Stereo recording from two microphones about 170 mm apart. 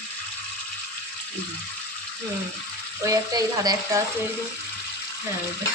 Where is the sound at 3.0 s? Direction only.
20° right (ahead or behind).